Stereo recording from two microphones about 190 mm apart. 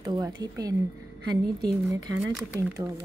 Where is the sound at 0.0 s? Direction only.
20° right (ahead or behind).